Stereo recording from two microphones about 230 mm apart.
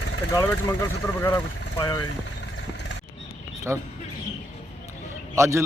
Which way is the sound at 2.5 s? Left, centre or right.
Left.